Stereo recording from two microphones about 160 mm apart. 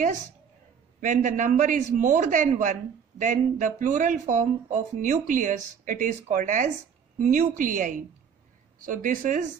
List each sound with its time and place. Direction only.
1.0 s a woman's voice: 50° right (ahead or behind)